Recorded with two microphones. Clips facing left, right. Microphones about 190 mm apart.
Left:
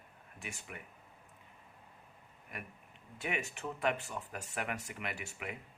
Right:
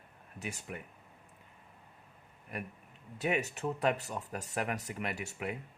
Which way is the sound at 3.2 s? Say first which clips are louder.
Right 6 dB; 40° right (ahead or behind).